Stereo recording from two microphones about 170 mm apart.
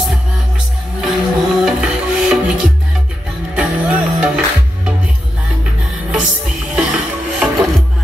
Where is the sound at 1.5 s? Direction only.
5° right (ahead or behind).